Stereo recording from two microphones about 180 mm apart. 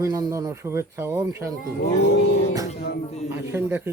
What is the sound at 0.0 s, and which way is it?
Speech, 20° right (ahead or behind).